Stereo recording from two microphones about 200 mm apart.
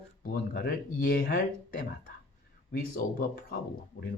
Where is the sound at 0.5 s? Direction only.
50° left (ahead or behind).